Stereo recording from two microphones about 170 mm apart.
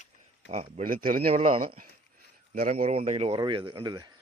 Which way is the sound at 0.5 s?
40° right (ahead or behind).